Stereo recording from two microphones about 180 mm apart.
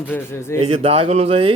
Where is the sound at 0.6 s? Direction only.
35° right (ahead or behind).